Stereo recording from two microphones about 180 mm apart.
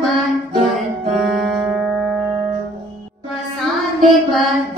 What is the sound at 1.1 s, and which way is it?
Music, centre (ahead or behind).